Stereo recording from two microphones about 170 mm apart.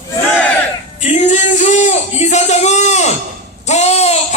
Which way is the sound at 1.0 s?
40° left (ahead or behind).